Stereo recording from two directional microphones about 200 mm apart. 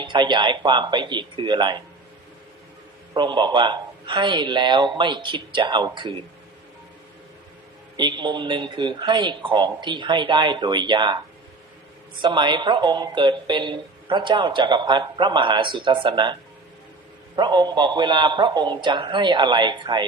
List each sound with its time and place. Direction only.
0.0 s a woman's voice: 20° right (ahead or behind)
3.2 s a woman's voice: 25° right (ahead or behind)
7.9 s a woman's voice: 20° right (ahead or behind)
12.2 s a woman's voice: 25° right (ahead or behind)